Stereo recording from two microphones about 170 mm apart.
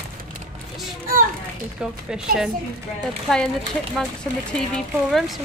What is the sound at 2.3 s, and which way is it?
Speech, 60° right (ahead or behind).